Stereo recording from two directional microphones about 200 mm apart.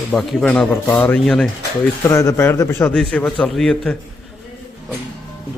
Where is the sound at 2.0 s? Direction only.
15° left (ahead or behind).